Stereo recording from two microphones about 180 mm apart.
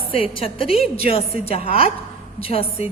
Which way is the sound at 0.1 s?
30° left (ahead or behind).